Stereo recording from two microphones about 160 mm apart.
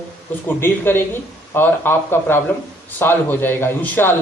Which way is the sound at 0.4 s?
15° left (ahead or behind).